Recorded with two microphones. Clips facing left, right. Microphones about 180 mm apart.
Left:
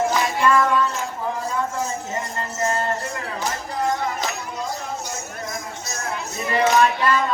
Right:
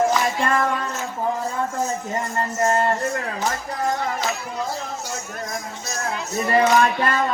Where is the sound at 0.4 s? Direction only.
50° right (ahead or behind).